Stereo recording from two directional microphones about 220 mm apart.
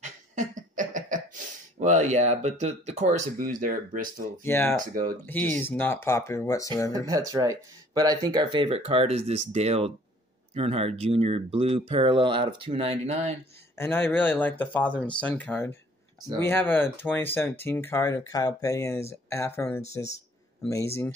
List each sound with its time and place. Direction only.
0.0 s a sound: 35° right (ahead or behind)
4.5 s speech: 10° left (ahead or behind)
6.9 s speech: 15° right (ahead or behind)
13.7 s speech: 10° left (ahead or behind)